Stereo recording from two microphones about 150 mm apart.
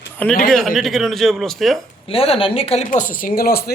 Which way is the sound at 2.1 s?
40° left (ahead or behind).